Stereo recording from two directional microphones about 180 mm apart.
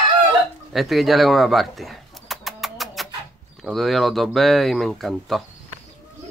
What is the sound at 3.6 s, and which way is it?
Speech, centre (ahead or behind).